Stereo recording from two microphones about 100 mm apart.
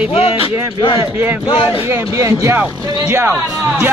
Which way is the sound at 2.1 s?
30° right (ahead or behind).